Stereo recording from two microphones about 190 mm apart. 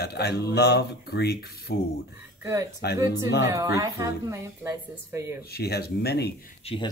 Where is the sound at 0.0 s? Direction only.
60° left (ahead or behind).